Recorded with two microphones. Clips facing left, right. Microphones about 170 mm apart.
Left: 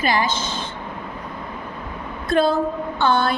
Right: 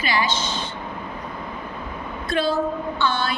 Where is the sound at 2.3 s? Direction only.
50° left (ahead or behind).